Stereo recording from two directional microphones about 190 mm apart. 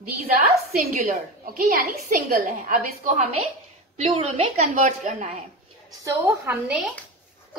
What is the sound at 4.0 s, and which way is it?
Speech, 30° right (ahead or behind).